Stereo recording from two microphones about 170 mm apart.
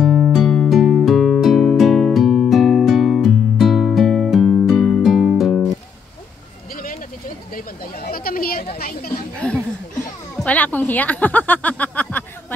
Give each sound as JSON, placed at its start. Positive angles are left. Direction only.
{"t": 0.0, "sound": "music", "side_deg": 0}
{"t": 6.7, "sound": "vehicle", "side_deg": 55}
{"t": 7.5, "sound": "a sound", "side_deg": 60}
{"t": 8.7, "sound": "children playing", "side_deg": 60}
{"t": 9.4, "sound": "chuckle", "side_deg": 10}
{"t": 10.3, "sound": "a sound", "side_deg": 10}